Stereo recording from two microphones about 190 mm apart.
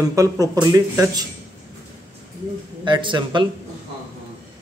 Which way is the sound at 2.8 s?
25° right (ahead or behind).